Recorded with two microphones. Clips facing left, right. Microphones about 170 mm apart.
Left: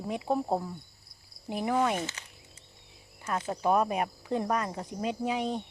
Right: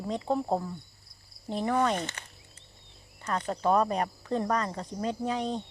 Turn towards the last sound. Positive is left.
turn(degrees=10)  # may be behind; listen again after turning